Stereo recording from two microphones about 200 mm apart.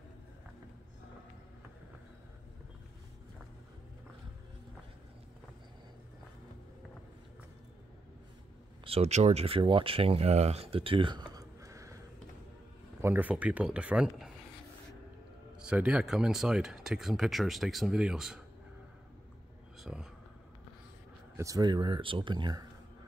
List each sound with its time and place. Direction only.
8.8 s speech: 30° right (ahead or behind)
13.0 s speech: 10° right (ahead or behind)
15.6 s speech: 5° right (ahead or behind)
19.8 s a sound: 5° right (ahead or behind)
21.4 s speech: 15° right (ahead or behind)